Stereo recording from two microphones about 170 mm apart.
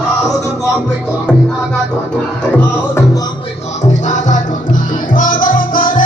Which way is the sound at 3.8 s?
45° left (ahead or behind).